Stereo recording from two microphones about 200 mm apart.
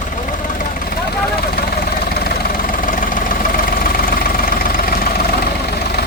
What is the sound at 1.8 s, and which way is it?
Vehicle, 50° left (ahead or behind).